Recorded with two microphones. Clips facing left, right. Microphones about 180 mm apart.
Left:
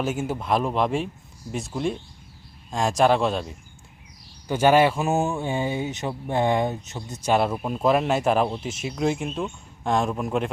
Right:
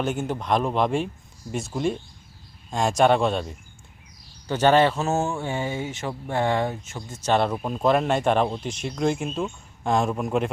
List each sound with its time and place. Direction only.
0.0 s a man's voice: 5° left (ahead or behind)